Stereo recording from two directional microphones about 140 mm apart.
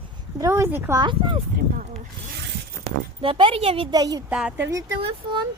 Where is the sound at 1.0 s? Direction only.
35° right (ahead or behind).